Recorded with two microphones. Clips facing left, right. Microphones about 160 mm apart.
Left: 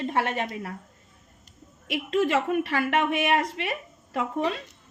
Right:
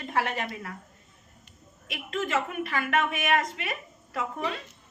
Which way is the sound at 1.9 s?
30° left (ahead or behind).